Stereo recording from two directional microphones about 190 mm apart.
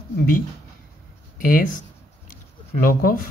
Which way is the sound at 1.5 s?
45° left (ahead or behind).